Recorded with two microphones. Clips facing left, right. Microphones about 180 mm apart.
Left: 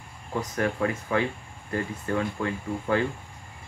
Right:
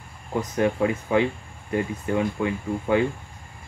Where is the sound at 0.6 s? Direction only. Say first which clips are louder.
Right 5 dB; 20° right (ahead or behind).